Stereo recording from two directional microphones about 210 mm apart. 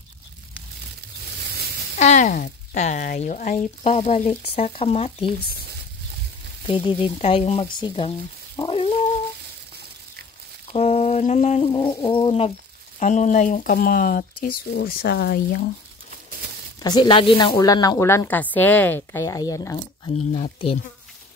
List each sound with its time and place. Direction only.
1.4 s a sound: 50° right (ahead or behind)
2.0 s speech: 35° left (ahead or behind)
6.7 s speech: 25° left (ahead or behind)
8.5 s dog: 25° left (ahead or behind)
10.7 s bird: 30° left (ahead or behind)
13.0 s speech: 35° left (ahead or behind)
16.8 s speech: 20° left (ahead or behind)
20.3 s speech: 25° left (ahead or behind)